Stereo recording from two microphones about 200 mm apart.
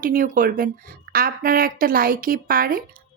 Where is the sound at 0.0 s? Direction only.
45° right (ahead or behind).